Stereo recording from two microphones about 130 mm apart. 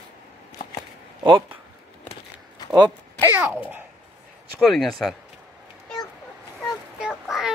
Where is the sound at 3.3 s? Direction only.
15° right (ahead or behind).